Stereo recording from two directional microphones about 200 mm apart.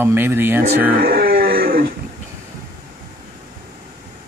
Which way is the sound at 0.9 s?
50° right (ahead or behind).